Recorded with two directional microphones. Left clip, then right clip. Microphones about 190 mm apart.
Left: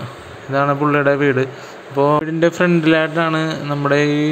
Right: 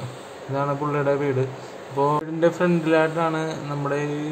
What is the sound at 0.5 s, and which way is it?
Speech, 20° left (ahead or behind).